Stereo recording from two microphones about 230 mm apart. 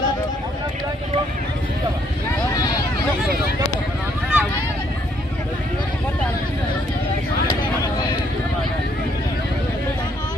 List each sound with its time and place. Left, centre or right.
4.3 s vehicle: centre